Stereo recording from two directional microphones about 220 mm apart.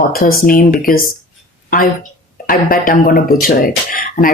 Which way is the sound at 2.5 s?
40° left (ahead or behind).